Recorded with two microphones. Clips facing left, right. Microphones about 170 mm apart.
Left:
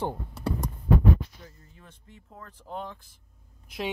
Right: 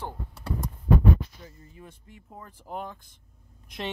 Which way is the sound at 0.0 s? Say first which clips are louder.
Left 6 dB; 20° left (ahead or behind).